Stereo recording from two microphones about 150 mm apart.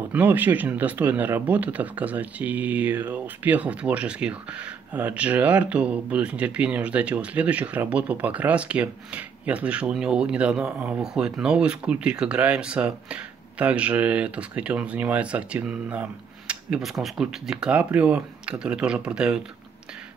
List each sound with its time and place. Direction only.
0.1 s speech: 10° right (ahead or behind)